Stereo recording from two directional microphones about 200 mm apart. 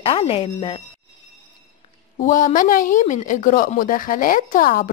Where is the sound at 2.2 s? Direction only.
40° left (ahead or behind).